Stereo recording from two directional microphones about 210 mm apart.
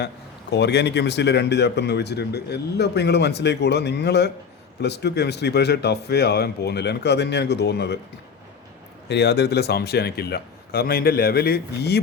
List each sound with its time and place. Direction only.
0.5 s speech: 55° left (ahead or behind)
9.0 s speech: 50° left (ahead or behind)